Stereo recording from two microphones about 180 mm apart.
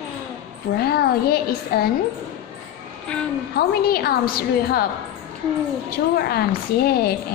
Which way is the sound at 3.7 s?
60° left (ahead or behind).